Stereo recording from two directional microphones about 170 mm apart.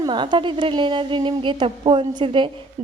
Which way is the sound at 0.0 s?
25° right (ahead or behind).